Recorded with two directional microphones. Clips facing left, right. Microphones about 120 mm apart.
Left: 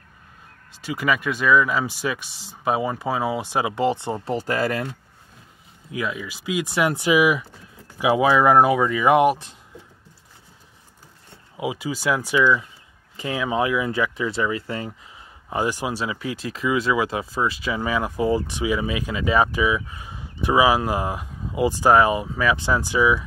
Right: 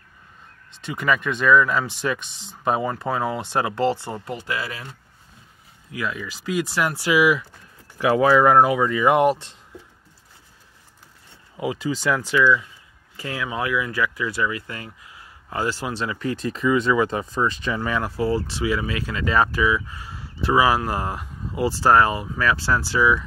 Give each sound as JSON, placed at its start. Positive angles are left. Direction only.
{"t": 0.7, "sound": "speech", "side_deg": 5}
{"t": 4.2, "sound": "speech", "side_deg": 35}
{"t": 5.9, "sound": "speech", "side_deg": 20}
{"t": 11.5, "sound": "speech", "side_deg": 15}